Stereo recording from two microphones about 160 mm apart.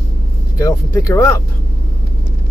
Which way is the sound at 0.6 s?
20° left (ahead or behind).